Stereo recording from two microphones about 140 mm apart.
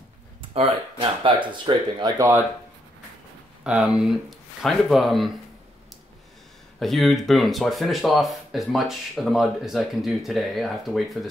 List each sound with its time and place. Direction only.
0.4 s speech: 40° right (ahead or behind)
2.0 s speech: 25° right (ahead or behind)
3.6 s speech: 5° right (ahead or behind)
6.8 s speech: centre (ahead or behind)